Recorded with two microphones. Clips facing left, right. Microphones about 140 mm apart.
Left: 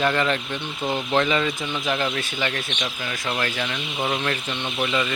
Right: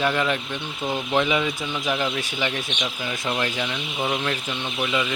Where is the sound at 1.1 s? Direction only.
10° right (ahead or behind).